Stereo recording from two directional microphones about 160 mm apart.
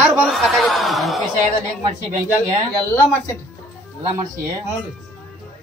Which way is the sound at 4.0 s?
20° right (ahead or behind).